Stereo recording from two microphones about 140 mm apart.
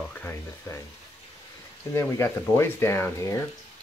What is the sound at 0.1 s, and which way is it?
Frying, 15° left (ahead or behind).